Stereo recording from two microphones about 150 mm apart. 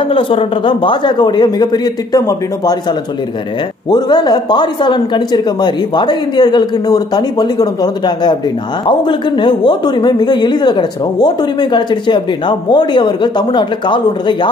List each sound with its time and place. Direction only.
0.1 s a woman's voice: 35° left (ahead or behind)
3.9 s a woman's voice: 30° left (ahead or behind)